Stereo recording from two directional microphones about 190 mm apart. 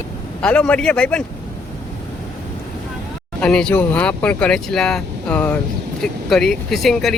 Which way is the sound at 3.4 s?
5° left (ahead or behind).